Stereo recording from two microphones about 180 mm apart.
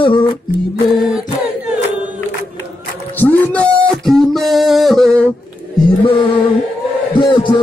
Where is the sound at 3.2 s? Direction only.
10° left (ahead or behind).